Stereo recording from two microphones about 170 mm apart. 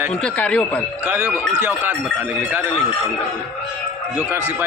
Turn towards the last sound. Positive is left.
turn(degrees=-10)  # may be behind; listen again after turning